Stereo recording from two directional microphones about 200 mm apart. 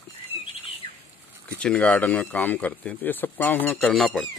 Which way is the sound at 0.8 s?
35° right (ahead or behind).